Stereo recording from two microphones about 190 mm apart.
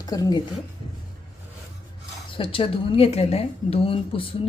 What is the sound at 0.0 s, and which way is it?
Speech, 20° left (ahead or behind).